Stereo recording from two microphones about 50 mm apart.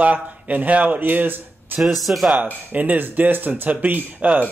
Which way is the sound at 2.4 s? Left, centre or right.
Right.